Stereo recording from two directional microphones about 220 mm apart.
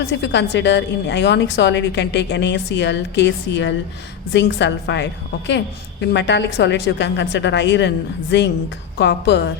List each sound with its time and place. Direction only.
0.1 s a woman's voice: 55° left (ahead or behind)